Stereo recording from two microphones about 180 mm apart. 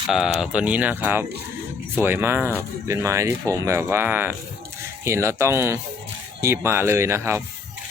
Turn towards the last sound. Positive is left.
turn(degrees=-15)  # may be behind; listen again after turning